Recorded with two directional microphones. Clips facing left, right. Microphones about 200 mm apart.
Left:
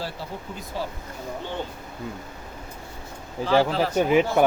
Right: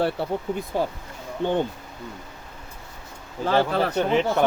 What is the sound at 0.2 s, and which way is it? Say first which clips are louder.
Speech: right 9 dB; 60° right (ahead or behind).